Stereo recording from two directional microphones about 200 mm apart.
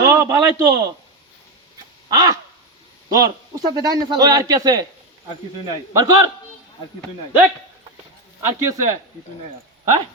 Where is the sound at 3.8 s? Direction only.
20° right (ahead or behind).